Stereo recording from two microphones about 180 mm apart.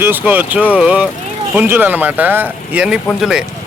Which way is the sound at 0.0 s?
10° right (ahead or behind).